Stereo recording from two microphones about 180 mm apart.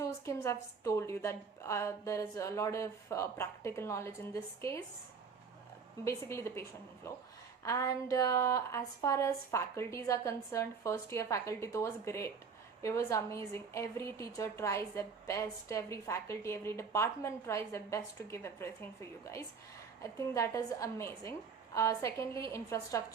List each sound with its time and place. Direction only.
0.0 s a woman's voice: 15° left (ahead or behind)
6.1 s a woman's voice: 15° left (ahead or behind)
20.0 s a woman's voice: 15° left (ahead or behind)